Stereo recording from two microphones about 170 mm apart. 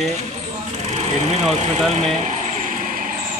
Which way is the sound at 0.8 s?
40° right (ahead or behind).